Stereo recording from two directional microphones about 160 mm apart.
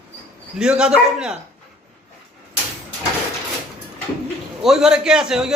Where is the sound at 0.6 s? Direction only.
5° right (ahead or behind).